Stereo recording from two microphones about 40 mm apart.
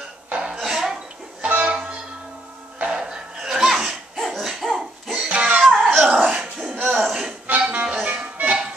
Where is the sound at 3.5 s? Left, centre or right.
Centre.